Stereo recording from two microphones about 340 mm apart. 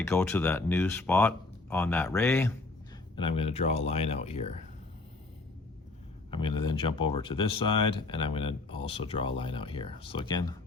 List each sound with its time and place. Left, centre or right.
0.0 s speech: centre
6.6 s speech: centre